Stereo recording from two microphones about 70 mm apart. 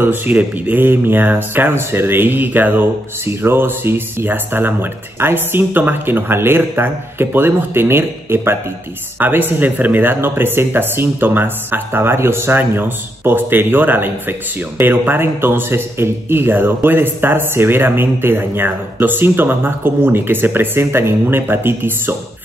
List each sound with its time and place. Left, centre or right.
0.0 s speech: right